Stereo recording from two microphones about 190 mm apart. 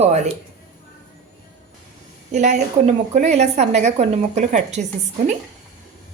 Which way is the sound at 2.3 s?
40° right (ahead or behind).